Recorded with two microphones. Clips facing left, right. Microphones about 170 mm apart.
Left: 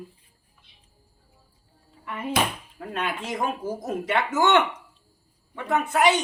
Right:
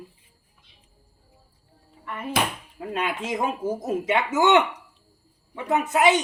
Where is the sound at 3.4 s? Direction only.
20° right (ahead or behind).